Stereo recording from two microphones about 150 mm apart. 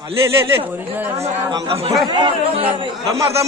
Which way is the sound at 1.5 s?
35° right (ahead or behind).